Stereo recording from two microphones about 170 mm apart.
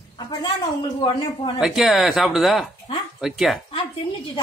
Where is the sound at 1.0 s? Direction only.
30° left (ahead or behind).